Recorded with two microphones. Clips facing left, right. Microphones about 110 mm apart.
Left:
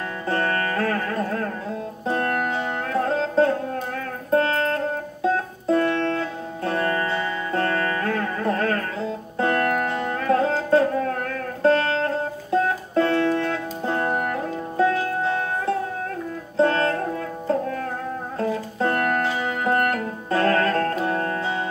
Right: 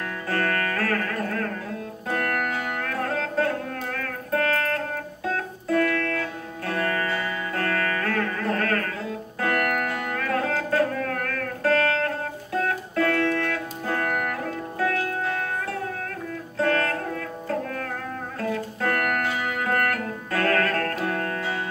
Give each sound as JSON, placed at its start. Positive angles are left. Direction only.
{"t": 0.3, "sound": "music", "side_deg": 25}
{"t": 18.4, "sound": "music", "side_deg": 25}